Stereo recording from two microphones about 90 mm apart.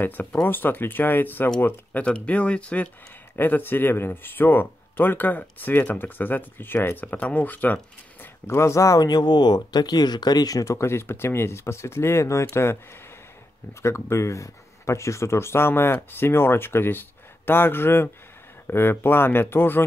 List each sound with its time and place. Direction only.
0.5 s speech: 20° left (ahead or behind)
2.0 s speech: 15° left (ahead or behind); by 10.6 s 45° left (ahead or behind)
10.6 s speech: 30° left (ahead or behind)
13.8 s speech: 30° left (ahead or behind)